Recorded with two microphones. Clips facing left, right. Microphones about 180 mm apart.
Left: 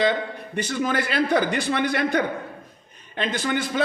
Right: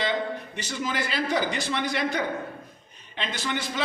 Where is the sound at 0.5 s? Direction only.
55° left (ahead or behind).